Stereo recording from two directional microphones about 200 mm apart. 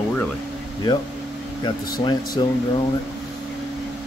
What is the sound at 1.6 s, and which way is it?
Speech, 20° left (ahead or behind).